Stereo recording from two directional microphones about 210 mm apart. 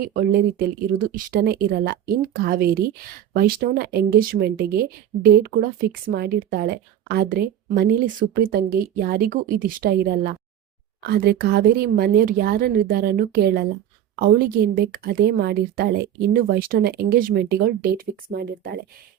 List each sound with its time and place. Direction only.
0.0 s speech: 45° right (ahead or behind)